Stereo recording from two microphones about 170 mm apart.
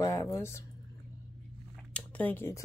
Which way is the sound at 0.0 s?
20° left (ahead or behind).